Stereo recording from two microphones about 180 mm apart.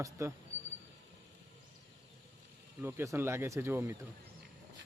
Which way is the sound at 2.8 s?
10° right (ahead or behind).